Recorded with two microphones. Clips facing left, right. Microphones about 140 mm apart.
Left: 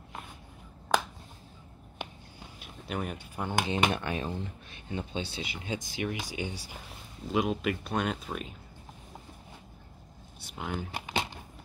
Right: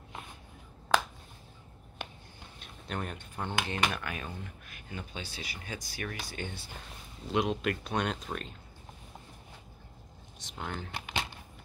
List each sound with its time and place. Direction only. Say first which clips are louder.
2.6 s speech: left 3 dB; 5° left (ahead or behind)
3.6 s speech: left 4 dB; 20° left (ahead or behind)
6.9 s speech: left 1 dB; centre (ahead or behind)
10.4 s speech: left 3 dB; 5° left (ahead or behind)